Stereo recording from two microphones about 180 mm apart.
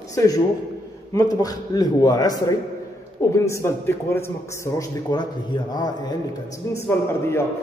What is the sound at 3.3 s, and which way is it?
A man's voice, 15° left (ahead or behind).